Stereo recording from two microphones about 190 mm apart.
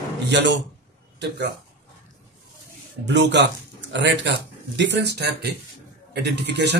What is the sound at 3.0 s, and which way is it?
Speech, 65° right (ahead or behind).